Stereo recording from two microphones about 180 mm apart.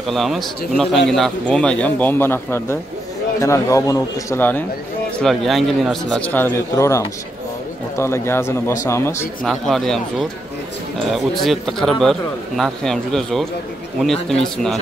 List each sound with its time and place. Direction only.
0.0 s speech: centre (ahead or behind)
9.4 s speech: centre (ahead or behind)